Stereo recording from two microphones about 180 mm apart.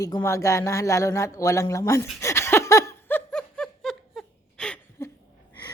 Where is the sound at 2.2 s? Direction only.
15° left (ahead or behind).